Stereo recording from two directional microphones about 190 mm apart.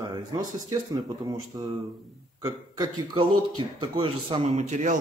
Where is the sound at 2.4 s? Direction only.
20° right (ahead or behind).